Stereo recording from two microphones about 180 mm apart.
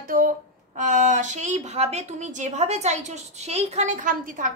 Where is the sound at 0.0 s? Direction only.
50° right (ahead or behind).